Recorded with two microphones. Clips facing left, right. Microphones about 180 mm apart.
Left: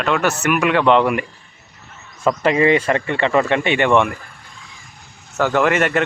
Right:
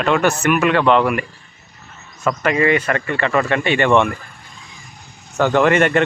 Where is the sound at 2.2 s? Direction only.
25° left (ahead or behind).